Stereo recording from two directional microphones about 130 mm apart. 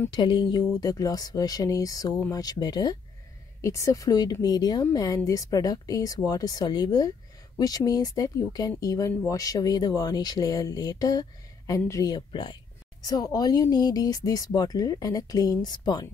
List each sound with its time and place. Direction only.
0.1 s speech: 35° left (ahead or behind)
12.3 s speech: 40° left (ahead or behind)